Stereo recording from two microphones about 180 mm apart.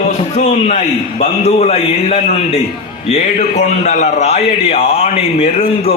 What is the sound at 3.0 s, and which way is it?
A man's voice, 40° left (ahead or behind).